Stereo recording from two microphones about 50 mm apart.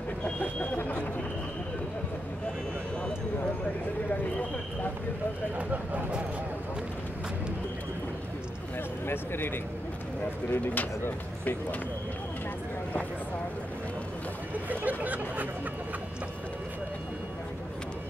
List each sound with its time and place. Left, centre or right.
0.2 s vehicle: left
5.6 s speech: right
9.0 s speech: left
10.5 s speech: left
14.7 s chatter: right